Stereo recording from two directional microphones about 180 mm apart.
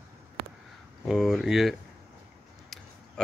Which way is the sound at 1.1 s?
Centre (ahead or behind).